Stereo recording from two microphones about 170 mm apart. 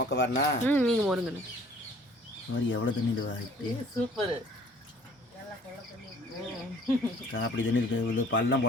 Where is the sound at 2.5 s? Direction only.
90° left.